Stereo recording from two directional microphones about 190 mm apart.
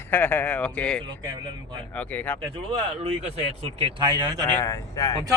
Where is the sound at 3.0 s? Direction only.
30° right (ahead or behind).